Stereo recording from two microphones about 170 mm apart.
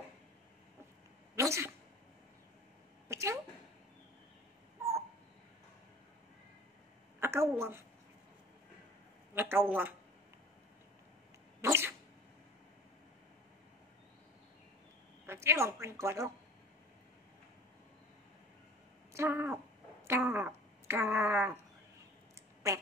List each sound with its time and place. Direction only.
1.3 s a sound: 15° right (ahead or behind)
3.1 s a sound: 15° right (ahead or behind)
7.2 s a woman's voice: 15° right (ahead or behind)
9.3 s speech: 15° right (ahead or behind)
11.6 s sneeze: 15° right (ahead or behind)
15.2 s a woman's voice: 15° right (ahead or behind)
19.1 s speech: 15° right (ahead or behind)